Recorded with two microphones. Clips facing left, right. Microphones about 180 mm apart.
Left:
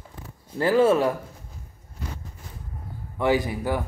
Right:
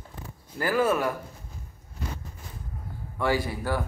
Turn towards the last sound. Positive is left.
turn(degrees=15)  # may be behind; listen again after turning